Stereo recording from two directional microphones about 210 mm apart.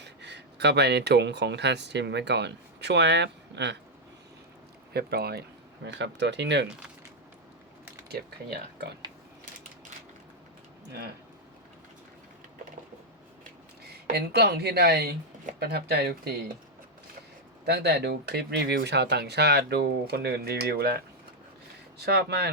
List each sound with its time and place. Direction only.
0.0 s speech: 55° right (ahead or behind)
4.9 s speech: 50° right (ahead or behind)
8.1 s speech: 50° right (ahead or behind)
13.8 s speech: 50° right (ahead or behind)
17.7 s speech: 50° right (ahead or behind)
22.0 s speech: 50° right (ahead or behind)